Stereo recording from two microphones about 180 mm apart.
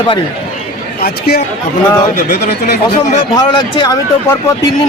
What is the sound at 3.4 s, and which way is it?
Speech, 20° left (ahead or behind).